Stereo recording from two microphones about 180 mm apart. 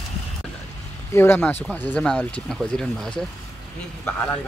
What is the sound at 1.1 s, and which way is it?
Speech, 10° left (ahead or behind).